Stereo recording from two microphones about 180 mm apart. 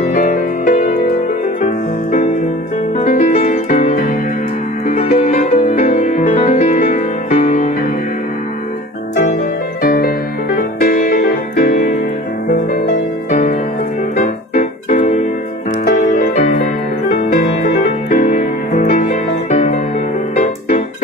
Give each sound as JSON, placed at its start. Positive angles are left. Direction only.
{"t": 0.0, "sound": "music", "side_deg": 50}
{"t": 3.1, "sound": "music", "side_deg": 45}
{"t": 9.8, "sound": "music", "side_deg": 55}
{"t": 13.3, "sound": "music", "side_deg": 50}
{"t": 14.2, "sound": "keyboard", "side_deg": 45}
{"t": 15.8, "sound": "music", "side_deg": 50}
{"t": 18.1, "sound": "music", "side_deg": 45}